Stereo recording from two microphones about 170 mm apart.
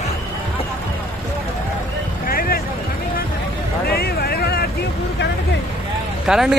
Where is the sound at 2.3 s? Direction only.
60° left (ahead or behind).